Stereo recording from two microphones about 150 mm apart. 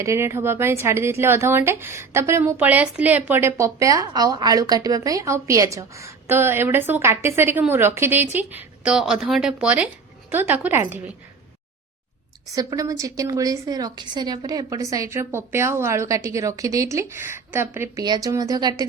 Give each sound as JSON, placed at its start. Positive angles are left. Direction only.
{"t": 0.0, "sound": "speech", "side_deg": -20}
{"t": 12.5, "sound": "a woman's voice", "side_deg": -20}
{"t": 18.0, "sound": "a woman's voice", "side_deg": -25}